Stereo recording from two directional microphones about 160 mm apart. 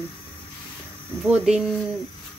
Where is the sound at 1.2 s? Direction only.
5° right (ahead or behind).